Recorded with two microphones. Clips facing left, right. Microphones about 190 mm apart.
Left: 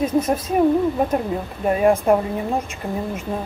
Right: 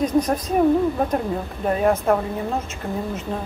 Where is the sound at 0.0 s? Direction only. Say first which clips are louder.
Even; 5° left (ahead or behind).